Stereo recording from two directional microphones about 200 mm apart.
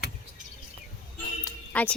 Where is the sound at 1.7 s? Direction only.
5° left (ahead or behind).